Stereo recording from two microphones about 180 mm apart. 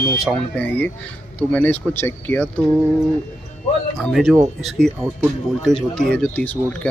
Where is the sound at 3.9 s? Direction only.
Centre (ahead or behind).